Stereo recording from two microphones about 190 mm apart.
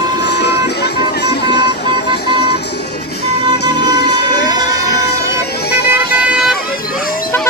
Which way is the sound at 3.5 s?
60° left (ahead or behind).